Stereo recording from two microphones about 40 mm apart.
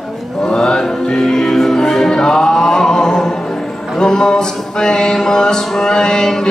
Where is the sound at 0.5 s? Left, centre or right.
Left.